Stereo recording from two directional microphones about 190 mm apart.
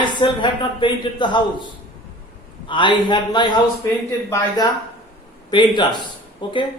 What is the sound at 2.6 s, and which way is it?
A man's voice, 25° left (ahead or behind).